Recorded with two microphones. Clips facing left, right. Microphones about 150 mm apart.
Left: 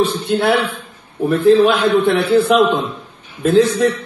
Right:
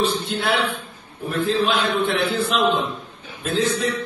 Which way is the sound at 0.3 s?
60° left (ahead or behind).